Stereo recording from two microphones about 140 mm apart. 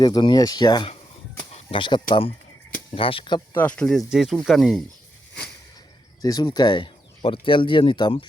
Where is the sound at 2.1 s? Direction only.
40° left (ahead or behind).